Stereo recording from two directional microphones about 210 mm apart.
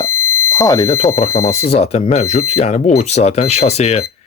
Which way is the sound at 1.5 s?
30° left (ahead or behind).